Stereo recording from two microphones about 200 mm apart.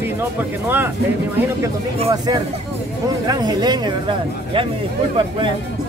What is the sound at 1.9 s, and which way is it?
Speech, 30° right (ahead or behind).